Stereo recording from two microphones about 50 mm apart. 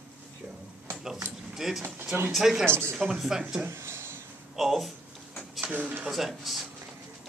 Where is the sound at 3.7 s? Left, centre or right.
Right.